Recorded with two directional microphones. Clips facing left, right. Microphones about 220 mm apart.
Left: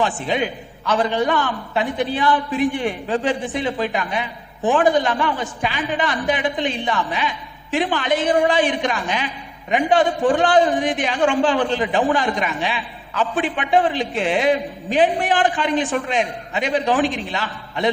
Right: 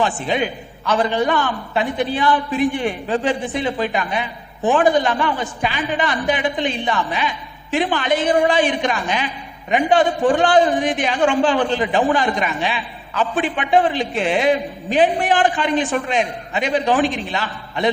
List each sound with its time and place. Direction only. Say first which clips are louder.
0.0 s a man's voice: right 1 dB; 15° right (ahead or behind)